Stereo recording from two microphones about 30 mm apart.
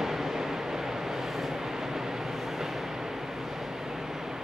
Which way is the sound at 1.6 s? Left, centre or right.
Centre.